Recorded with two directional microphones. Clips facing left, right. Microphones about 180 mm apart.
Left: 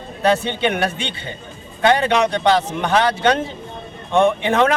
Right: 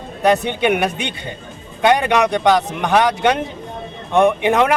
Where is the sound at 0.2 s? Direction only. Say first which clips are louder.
Right 2 dB; 15° right (ahead or behind).